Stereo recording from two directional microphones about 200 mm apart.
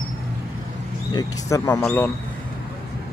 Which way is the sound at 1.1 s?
15° left (ahead or behind).